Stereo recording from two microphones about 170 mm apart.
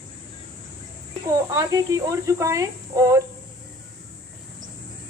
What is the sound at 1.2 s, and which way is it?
Speech, 20° right (ahead or behind).